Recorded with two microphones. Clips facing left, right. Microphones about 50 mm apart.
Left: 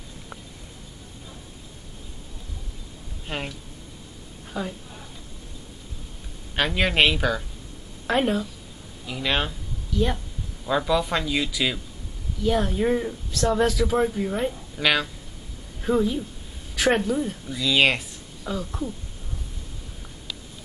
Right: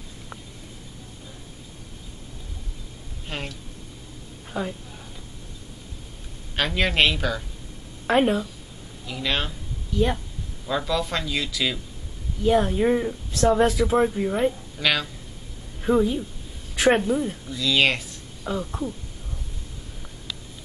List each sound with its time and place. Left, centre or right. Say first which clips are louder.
3.3 s speech: left 2 dB; centre
4.5 s a sound: right 2 dB; centre
6.5 s speech: left 1 dB; centre
8.1 s speech: right 2 dB; centre
9.0 s speech: left 1 dB; centre
10.7 s speech: left 3 dB; centre
12.4 s speech: right 3 dB; centre
13.5 s speech: right 2 dB; centre
13.9 s speech: right 2 dB; centre
14.8 s speech: left 2 dB; centre
15.8 s a woman's voice: right 2 dB; centre
17.5 s speech: left 1 dB; centre
18.4 s speech: right 2 dB; centre